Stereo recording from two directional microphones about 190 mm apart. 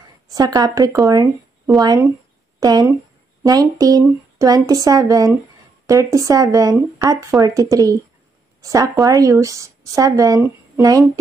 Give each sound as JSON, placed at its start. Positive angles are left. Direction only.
{"t": 0.3, "sound": "a woman's voice", "side_deg": -20}